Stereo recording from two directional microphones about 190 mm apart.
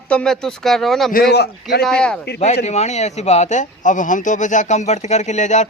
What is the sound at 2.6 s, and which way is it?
Speech, 35° left (ahead or behind).